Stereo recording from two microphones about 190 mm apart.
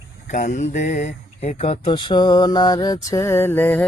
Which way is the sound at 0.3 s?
40° left (ahead or behind).